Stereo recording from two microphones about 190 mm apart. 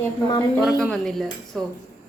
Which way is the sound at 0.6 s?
5° right (ahead or behind).